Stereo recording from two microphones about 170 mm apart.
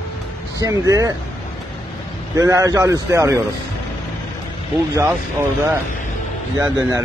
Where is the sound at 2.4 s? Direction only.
20° right (ahead or behind).